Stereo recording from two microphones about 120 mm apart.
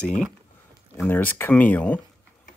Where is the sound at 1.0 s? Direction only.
15° left (ahead or behind).